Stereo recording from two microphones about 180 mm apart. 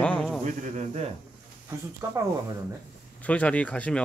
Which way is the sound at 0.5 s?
40° right (ahead or behind).